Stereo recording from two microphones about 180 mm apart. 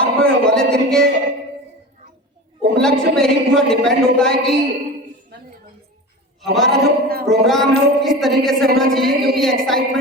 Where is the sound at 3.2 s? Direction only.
Centre (ahead or behind).